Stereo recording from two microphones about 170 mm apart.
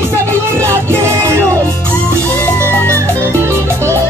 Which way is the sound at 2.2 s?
10° left (ahead or behind).